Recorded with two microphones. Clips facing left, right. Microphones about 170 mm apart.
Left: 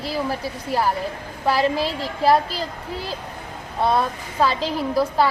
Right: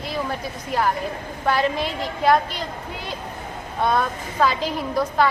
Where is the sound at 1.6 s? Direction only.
30° left (ahead or behind).